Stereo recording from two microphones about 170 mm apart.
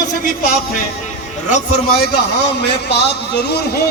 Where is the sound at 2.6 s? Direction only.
85° left.